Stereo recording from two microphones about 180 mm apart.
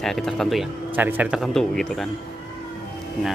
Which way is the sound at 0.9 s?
10° right (ahead or behind).